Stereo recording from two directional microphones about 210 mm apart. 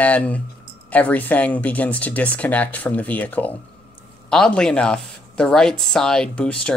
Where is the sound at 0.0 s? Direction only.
5° left (ahead or behind).